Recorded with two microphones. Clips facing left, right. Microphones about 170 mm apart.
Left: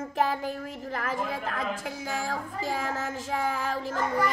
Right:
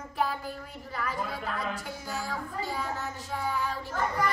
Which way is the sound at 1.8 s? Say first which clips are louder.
Left 3 dB; 90° left.